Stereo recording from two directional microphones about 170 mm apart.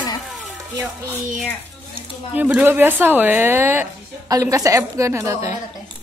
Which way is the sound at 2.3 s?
10° right (ahead or behind).